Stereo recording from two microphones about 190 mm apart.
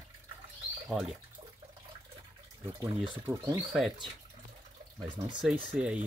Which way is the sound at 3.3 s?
10° right (ahead or behind).